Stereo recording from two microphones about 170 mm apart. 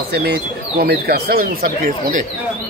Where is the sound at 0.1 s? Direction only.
70° right (ahead or behind).